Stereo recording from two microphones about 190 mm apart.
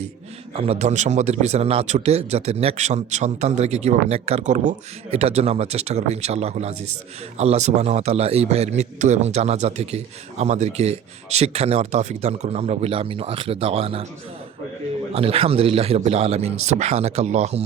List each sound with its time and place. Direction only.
0.5 s a man's voice: 30° right (ahead or behind)
15.1 s a man's voice: 30° right (ahead or behind)